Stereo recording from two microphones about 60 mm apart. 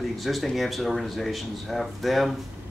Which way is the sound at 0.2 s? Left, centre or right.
Centre.